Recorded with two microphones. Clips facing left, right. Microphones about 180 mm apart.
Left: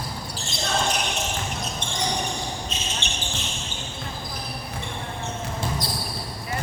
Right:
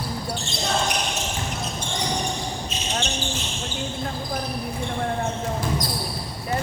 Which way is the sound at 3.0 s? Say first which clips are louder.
Right 5 dB; 60° left (ahead or behind).